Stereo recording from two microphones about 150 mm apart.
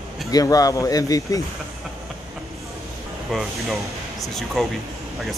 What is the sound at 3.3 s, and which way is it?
Speech, centre (ahead or behind).